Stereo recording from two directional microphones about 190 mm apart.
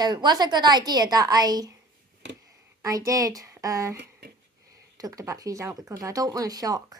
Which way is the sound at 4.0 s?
55° right (ahead or behind).